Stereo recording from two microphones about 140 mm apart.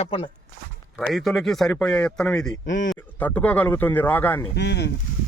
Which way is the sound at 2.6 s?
70° left (ahead or behind).